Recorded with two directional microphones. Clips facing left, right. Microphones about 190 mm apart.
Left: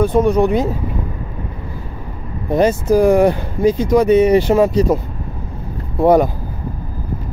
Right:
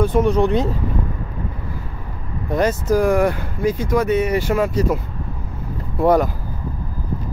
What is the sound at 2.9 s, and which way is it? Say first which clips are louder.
Speech: left 5 dB; 30° left (ahead or behind).